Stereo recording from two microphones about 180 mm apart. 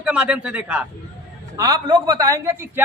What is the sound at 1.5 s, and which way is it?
A man's voice, 20° right (ahead or behind).